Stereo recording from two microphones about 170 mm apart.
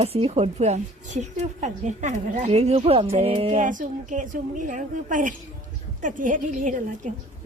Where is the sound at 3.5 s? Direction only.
50° right (ahead or behind).